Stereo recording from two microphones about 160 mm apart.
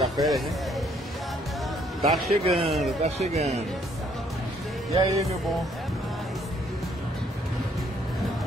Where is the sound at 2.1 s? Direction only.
Centre (ahead or behind).